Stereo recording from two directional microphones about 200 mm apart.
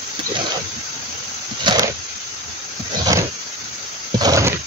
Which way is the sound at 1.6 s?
20° right (ahead or behind).